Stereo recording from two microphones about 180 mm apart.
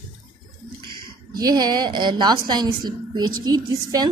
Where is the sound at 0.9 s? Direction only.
20° right (ahead or behind).